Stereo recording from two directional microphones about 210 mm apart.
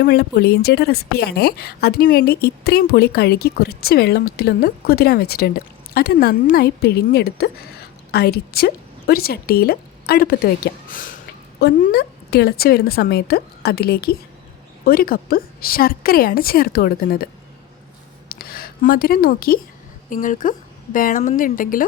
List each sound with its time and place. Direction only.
0.0 s a woman's voice: 50° left (ahead or behind)
18.3 s a sound: 45° left (ahead or behind)
20.1 s speech: 40° left (ahead or behind)